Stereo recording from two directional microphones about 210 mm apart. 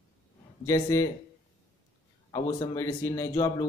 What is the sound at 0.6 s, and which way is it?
Speech, 15° left (ahead or behind).